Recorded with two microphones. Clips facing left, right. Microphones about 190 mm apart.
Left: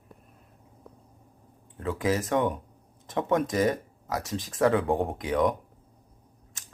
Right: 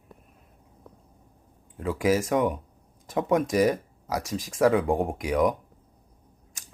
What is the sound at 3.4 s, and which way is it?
Speech, 20° right (ahead or behind).